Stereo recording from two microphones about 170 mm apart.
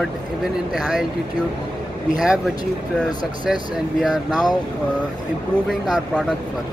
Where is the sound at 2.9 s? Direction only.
Centre (ahead or behind).